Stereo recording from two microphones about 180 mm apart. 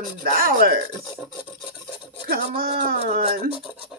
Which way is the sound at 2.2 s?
55° right (ahead or behind).